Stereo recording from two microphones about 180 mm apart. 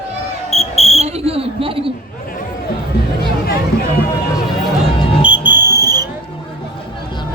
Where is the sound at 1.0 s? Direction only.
35° right (ahead or behind).